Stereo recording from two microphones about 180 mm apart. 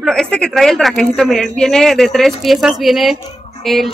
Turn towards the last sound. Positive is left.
turn(degrees=0)  # may be behind; listen again after turning